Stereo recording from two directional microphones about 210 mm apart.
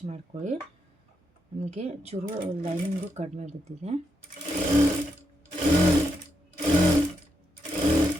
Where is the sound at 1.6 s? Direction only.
30° right (ahead or behind).